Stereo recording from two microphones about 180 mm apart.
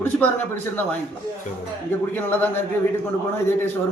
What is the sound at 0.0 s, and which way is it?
Speech, 10° left (ahead or behind).